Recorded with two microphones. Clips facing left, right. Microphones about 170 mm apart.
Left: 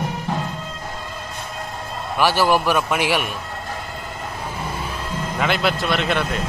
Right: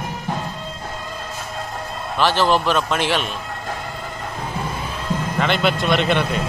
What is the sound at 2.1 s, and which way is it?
A man's voice, 10° left (ahead or behind).